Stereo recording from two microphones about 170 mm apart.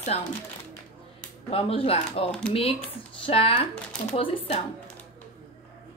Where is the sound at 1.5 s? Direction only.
35° left (ahead or behind).